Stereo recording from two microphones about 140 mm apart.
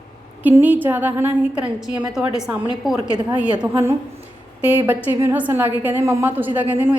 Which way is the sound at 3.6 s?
15° right (ahead or behind).